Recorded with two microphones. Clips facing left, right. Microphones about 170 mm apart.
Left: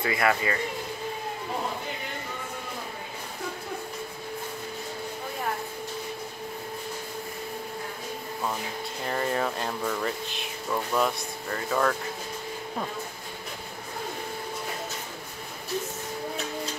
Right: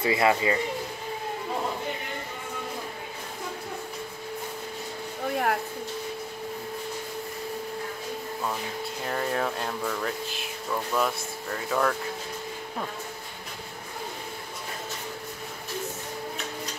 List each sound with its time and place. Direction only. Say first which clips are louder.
0.0 s speech: right 2 dB; 25° right (ahead or behind)
5.3 s a sound: right 7 dB; 70° right (ahead or behind)
9.0 s speech: left 1 dB; centre (ahead or behind)